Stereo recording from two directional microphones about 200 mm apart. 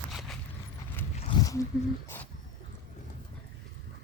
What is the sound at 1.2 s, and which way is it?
Zipper, 25° left (ahead or behind).